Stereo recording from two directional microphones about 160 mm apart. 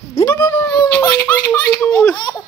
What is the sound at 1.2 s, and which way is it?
Baby laughter, 20° left (ahead or behind).